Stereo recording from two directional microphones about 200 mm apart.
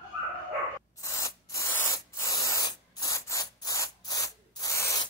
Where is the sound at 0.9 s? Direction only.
15° left (ahead or behind).